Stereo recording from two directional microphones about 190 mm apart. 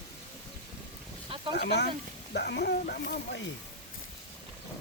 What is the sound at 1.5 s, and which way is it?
Speech, 60° left (ahead or behind).